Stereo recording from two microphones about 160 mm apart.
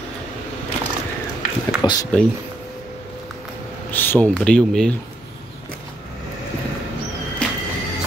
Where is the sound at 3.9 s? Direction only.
10° left (ahead or behind).